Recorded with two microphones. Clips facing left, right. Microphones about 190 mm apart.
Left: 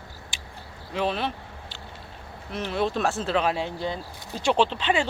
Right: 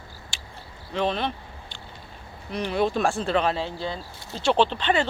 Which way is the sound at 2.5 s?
Centre (ahead or behind).